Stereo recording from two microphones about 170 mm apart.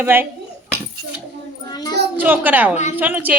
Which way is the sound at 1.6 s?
25° left (ahead or behind).